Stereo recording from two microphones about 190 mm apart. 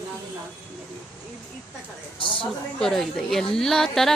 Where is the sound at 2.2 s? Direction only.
25° left (ahead or behind).